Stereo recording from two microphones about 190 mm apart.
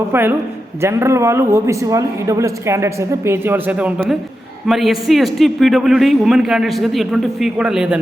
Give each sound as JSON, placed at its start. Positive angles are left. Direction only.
{"t": 0.1, "sound": "a man's voice", "side_deg": -10}